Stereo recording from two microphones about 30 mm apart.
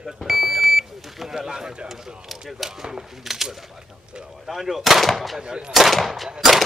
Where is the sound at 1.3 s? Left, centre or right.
Right.